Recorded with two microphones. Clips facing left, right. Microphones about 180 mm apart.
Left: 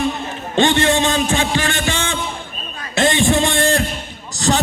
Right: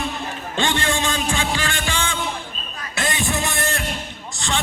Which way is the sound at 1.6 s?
20° left (ahead or behind).